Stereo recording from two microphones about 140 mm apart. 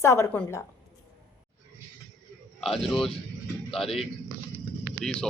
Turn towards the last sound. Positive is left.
turn(degrees=5)  # may be behind; listen again after turning